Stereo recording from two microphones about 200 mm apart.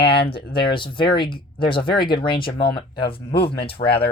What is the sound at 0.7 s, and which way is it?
Speech, 25° left (ahead or behind).